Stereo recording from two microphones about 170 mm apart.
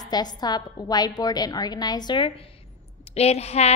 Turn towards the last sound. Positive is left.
turn(degrees=40)  # may be behind; listen again after turning